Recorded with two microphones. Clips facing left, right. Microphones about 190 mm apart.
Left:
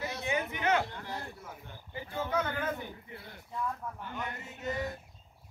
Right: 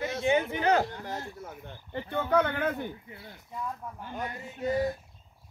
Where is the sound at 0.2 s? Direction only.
25° right (ahead or behind); by 2.9 s 60° right (ahead or behind).